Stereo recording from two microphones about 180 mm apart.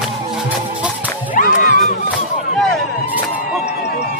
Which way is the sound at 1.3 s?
50° left (ahead or behind).